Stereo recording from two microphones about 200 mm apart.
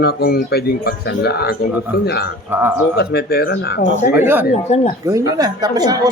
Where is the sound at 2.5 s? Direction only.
10° right (ahead or behind).